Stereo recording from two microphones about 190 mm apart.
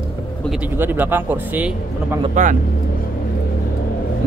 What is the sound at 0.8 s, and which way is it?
A man's voice, 10° right (ahead or behind).